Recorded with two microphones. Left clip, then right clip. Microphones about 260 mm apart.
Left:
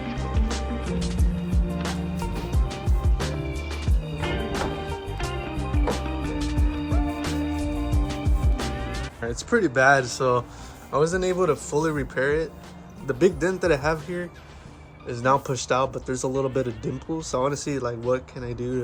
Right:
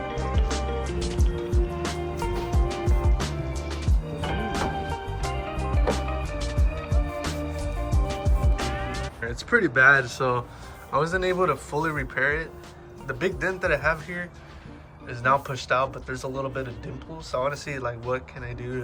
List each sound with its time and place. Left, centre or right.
0.2 s music: centre
9.2 s speech: centre